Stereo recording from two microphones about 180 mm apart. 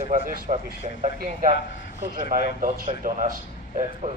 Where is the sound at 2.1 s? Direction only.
50° right (ahead or behind).